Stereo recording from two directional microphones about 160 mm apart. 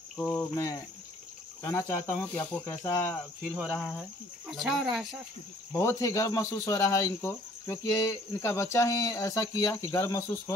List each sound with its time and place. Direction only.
0.2 s speech: 10° left (ahead or behind)
1.6 s speech: 15° left (ahead or behind)
3.5 s speech: centre (ahead or behind)
5.7 s speech: 15° left (ahead or behind)